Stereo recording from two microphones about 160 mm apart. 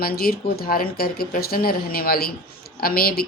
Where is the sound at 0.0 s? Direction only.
70° left (ahead or behind).